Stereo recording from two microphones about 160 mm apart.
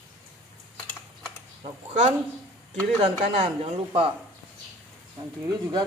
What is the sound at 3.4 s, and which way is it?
Speech, 35° right (ahead or behind).